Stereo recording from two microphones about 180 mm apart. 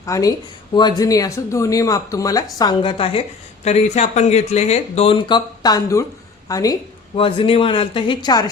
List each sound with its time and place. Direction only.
0.0 s speech: 20° left (ahead or behind)